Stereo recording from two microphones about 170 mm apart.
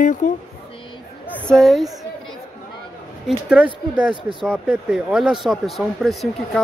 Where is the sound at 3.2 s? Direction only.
5° right (ahead or behind).